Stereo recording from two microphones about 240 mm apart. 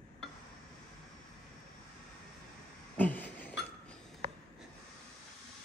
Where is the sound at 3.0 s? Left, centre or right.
Centre.